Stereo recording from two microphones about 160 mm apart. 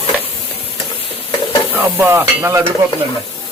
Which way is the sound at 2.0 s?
15° right (ahead or behind).